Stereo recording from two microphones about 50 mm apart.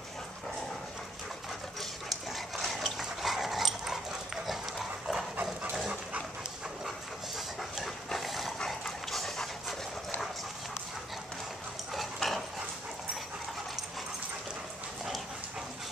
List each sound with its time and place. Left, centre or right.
1.8 s dog: centre
5.4 s dog: right
7.3 s dog: centre
11.9 s dog: centre